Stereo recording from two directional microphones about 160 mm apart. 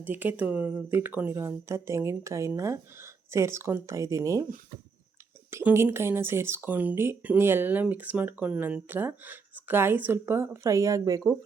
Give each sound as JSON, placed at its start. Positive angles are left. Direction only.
{"t": 0.0, "sound": "speech", "side_deg": -10}
{"t": 5.5, "sound": "speech", "side_deg": -15}